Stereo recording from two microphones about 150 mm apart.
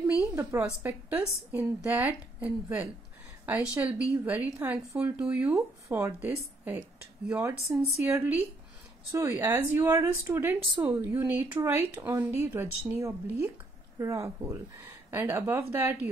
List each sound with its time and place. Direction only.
0.0 s speech: 20° right (ahead or behind)